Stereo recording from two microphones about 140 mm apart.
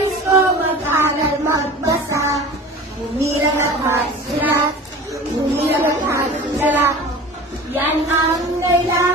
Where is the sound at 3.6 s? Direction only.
20° right (ahead or behind).